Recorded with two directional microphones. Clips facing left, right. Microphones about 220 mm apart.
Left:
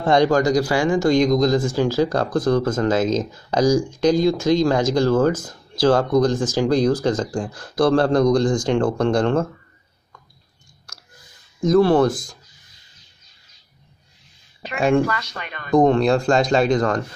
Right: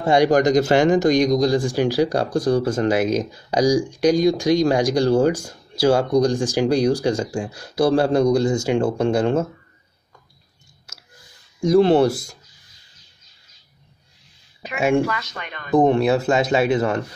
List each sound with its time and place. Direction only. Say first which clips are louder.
0.0 s speech: right 1 dB; 10° right (ahead or behind)
11.6 s speech: even; 10° right (ahead or behind)
14.6 s speech: left 1 dB; 5° right (ahead or behind)